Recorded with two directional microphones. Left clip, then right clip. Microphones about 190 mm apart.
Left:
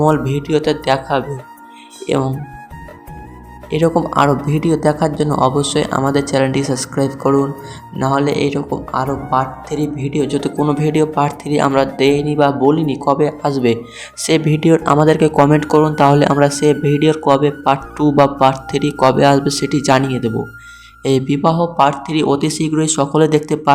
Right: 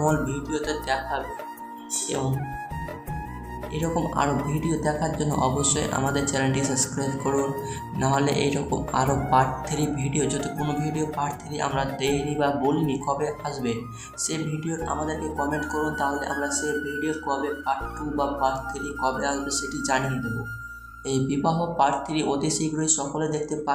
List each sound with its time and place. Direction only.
0.0 s speech: 35° left (ahead or behind)
3.7 s speech: 35° left (ahead or behind)
10.7 s speech: 35° left (ahead or behind)